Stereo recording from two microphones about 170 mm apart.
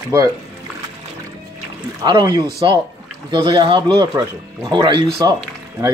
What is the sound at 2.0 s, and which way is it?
Speech, 25° right (ahead or behind).